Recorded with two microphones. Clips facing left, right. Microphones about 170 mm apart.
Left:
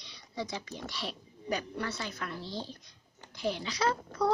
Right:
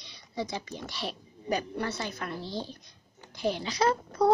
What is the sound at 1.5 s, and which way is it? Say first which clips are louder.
Speech: right 4 dB; 35° right (ahead or behind).